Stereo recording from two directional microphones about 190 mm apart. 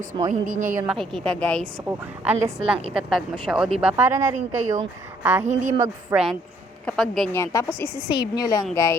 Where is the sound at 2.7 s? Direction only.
30° right (ahead or behind).